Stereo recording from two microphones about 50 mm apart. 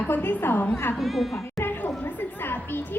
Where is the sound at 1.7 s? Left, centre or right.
Left.